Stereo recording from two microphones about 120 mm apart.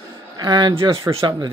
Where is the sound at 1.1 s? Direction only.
25° right (ahead or behind).